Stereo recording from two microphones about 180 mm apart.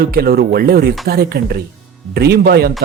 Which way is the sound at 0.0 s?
60° right (ahead or behind).